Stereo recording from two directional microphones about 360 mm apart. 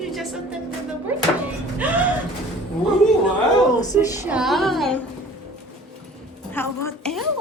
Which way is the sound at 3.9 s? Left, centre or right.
Centre.